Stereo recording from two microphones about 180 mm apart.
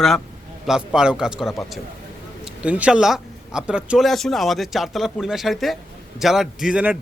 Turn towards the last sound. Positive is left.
turn(degrees=-5)  # may be behind; listen again after turning